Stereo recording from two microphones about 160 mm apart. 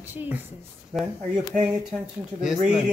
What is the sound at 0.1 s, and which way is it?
Speech, 10° right (ahead or behind).